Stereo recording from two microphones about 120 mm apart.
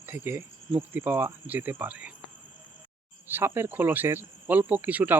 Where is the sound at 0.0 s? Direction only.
20° right (ahead or behind).